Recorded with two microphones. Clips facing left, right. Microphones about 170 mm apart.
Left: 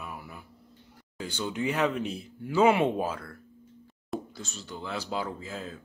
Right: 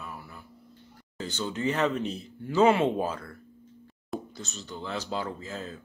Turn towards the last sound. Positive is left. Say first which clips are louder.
# right 1 dB
turn(degrees=5)  # may be behind; listen again after turning